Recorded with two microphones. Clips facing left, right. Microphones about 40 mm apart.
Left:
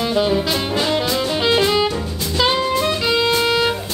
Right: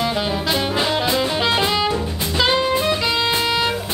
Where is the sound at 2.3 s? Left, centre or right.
Centre.